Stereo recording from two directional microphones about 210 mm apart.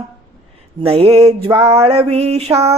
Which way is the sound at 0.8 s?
25° right (ahead or behind).